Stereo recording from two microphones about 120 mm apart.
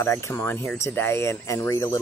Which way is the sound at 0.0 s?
20° left (ahead or behind).